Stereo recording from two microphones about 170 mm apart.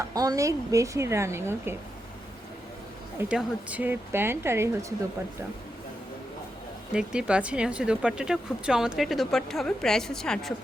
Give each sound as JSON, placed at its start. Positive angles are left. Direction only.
{"t": 0.1, "sound": "speech", "side_deg": -20}
{"t": 3.2, "sound": "speech", "side_deg": -5}
{"t": 6.9, "sound": "speech", "side_deg": -5}